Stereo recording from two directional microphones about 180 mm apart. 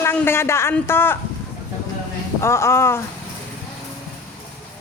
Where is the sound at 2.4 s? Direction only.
15° left (ahead or behind).